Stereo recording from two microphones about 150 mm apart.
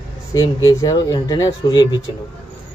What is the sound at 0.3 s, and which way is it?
Speech, 25° left (ahead or behind).